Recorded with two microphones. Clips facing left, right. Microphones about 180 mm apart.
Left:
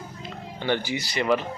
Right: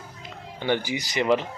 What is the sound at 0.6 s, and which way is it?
Speech, 15° right (ahead or behind).